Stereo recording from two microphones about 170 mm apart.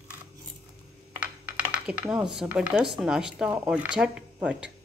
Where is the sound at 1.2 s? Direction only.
10° right (ahead or behind).